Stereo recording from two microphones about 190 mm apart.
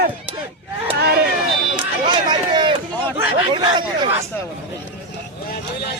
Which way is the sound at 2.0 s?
25° right (ahead or behind).